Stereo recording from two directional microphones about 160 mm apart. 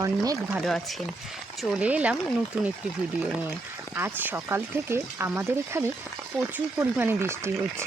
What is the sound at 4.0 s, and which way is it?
Speech, 15° right (ahead or behind).